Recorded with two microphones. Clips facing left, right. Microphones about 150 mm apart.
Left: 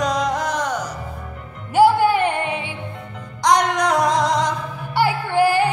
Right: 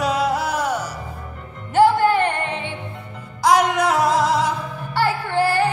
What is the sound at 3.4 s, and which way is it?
Music, 5° right (ahead or behind).